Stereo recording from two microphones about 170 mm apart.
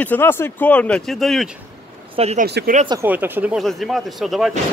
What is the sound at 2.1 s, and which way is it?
Speech, 40° right (ahead or behind).